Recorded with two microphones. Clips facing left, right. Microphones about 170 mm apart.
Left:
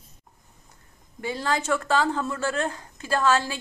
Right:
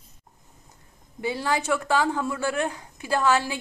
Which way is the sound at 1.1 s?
15° right (ahead or behind).